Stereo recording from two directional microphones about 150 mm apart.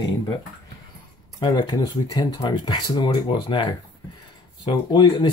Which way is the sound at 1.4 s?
30° left (ahead or behind).